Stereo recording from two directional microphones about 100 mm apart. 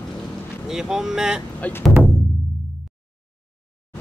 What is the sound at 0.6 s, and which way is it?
Speech, 5° right (ahead or behind).